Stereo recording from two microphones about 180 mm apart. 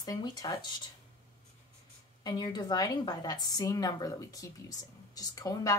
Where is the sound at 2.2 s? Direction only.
25° left (ahead or behind).